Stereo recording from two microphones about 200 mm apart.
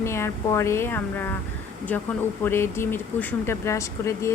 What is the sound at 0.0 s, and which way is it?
Speech, 15° left (ahead or behind).